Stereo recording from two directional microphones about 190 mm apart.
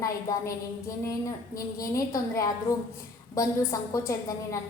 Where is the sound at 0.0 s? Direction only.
20° left (ahead or behind).